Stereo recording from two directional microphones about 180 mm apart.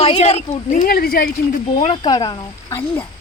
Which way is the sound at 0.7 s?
55° left (ahead or behind).